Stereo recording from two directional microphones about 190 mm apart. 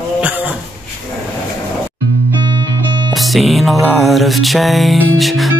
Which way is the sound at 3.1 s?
Centre (ahead or behind).